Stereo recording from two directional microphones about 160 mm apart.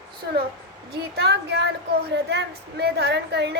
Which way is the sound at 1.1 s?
90° right.